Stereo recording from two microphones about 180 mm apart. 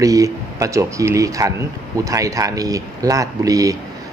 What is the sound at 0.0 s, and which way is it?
Speech, 20° right (ahead or behind).